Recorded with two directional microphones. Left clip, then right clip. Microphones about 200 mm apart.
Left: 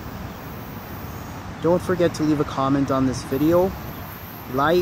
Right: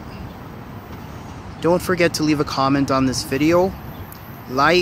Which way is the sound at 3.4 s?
5° right (ahead or behind).